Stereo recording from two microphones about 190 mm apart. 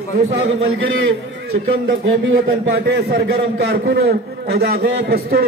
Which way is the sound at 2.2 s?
75° right (ahead or behind).